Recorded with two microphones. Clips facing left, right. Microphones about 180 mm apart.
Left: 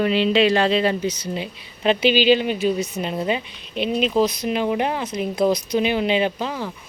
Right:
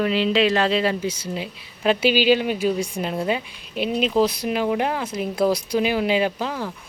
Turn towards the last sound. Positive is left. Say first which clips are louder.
# even
turn(degrees=10)  # may be behind; listen again after turning